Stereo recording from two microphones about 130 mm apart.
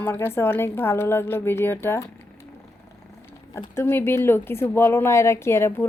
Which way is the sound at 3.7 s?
20° left (ahead or behind).